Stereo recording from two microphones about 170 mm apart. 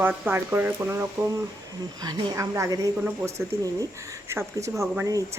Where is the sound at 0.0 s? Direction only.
10° right (ahead or behind).